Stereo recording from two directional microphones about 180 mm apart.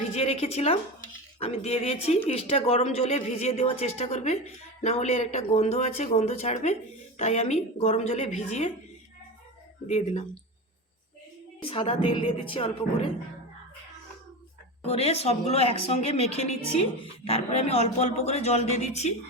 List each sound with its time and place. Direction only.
0.1 s a woman's voice: 35° left (ahead or behind)
9.9 s speech: 35° left (ahead or behind)
11.6 s a woman's voice: 30° left (ahead or behind)
14.8 s speech: 35° left (ahead or behind)